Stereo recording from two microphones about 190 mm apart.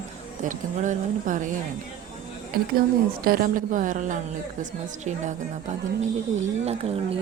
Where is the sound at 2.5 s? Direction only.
55° right (ahead or behind).